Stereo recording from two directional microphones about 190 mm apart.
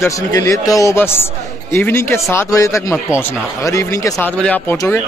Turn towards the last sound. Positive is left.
turn(degrees=15)  # may be behind; listen again after turning